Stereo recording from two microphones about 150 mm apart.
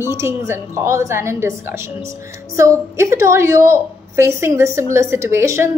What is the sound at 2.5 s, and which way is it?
A woman's voice, 20° right (ahead or behind).